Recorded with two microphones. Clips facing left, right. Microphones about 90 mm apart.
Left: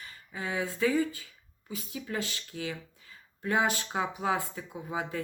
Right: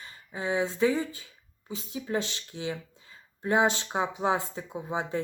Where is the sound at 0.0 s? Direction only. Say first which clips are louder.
Right 4 dB; 25° right (ahead or behind).